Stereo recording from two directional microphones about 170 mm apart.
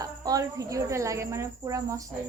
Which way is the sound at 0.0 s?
20° right (ahead or behind).